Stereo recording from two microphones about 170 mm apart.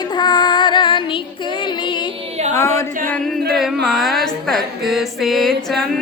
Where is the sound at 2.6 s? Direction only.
15° left (ahead or behind).